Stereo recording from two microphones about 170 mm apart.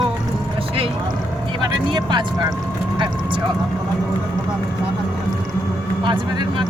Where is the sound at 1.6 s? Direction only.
25° right (ahead or behind).